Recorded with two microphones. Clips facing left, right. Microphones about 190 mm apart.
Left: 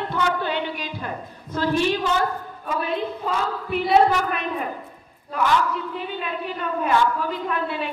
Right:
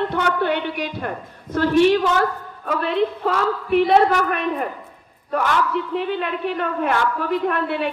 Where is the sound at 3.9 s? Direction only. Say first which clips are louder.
Left 3 dB; 55° right (ahead or behind).